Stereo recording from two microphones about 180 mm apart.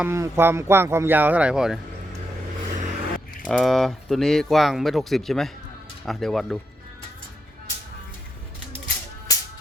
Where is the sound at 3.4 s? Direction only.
Centre (ahead or behind).